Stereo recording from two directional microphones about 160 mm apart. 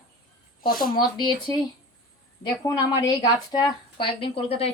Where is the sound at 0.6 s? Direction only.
65° left (ahead or behind).